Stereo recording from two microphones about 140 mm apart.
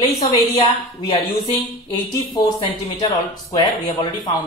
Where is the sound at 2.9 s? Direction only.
30° left (ahead or behind).